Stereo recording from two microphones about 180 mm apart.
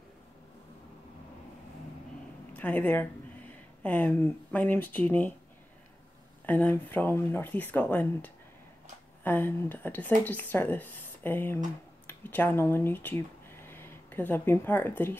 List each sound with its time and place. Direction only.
2.5 s speech: 10° left (ahead or behind)
6.4 s speech: 10° left (ahead or behind)